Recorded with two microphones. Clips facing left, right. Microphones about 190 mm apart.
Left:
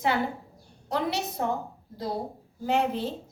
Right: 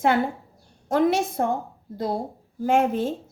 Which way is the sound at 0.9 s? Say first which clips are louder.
Right 8 dB; 45° right (ahead or behind).